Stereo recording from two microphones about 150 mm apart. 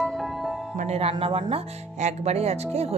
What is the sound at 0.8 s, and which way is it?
Speech, 45° right (ahead or behind).